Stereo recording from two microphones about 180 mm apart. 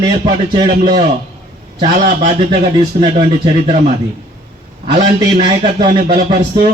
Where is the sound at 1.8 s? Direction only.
40° right (ahead or behind).